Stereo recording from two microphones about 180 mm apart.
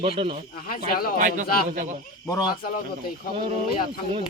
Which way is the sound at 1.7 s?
45° right (ahead or behind).